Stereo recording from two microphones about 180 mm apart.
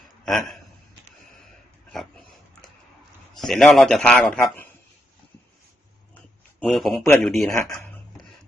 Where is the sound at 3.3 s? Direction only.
Centre (ahead or behind).